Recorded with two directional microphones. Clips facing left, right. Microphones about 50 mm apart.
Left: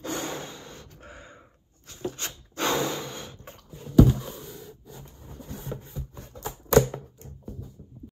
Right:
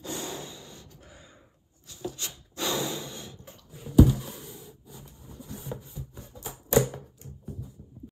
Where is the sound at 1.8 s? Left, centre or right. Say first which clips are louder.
Left 3 dB; left.